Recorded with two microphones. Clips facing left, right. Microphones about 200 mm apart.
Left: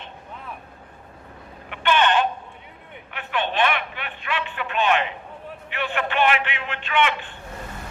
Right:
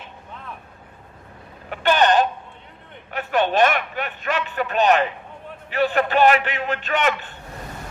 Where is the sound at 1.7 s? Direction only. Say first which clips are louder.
Right 3 dB; 40° right (ahead or behind).